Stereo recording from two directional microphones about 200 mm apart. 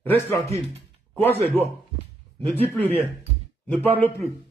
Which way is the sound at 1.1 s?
10° left (ahead or behind).